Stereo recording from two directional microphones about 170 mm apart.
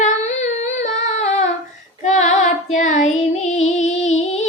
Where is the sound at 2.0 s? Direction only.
45° left (ahead or behind).